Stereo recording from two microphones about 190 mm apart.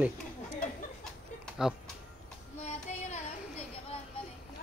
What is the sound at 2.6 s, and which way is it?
Child singing, 35° left (ahead or behind).